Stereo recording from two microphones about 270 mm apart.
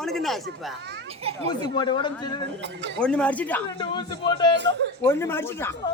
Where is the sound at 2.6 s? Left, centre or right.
Right.